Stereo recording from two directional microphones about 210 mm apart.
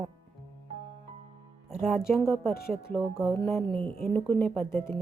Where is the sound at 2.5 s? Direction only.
45° left (ahead or behind).